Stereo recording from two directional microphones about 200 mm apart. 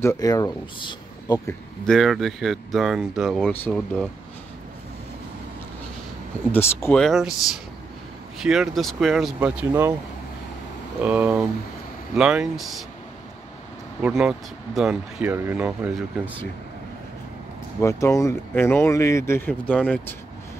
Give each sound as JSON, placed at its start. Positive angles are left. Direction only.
{"t": 0.0, "sound": "speech", "side_deg": 15}
{"t": 1.9, "sound": "speech", "side_deg": 0}
{"t": 6.5, "sound": "speech", "side_deg": 10}
{"t": 11.0, "sound": "speech", "side_deg": -5}
{"t": 14.0, "sound": "speech", "side_deg": 0}
{"t": 17.7, "sound": "speech", "side_deg": 15}